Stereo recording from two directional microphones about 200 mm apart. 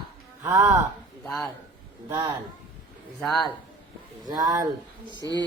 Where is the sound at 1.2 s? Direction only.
5° left (ahead or behind).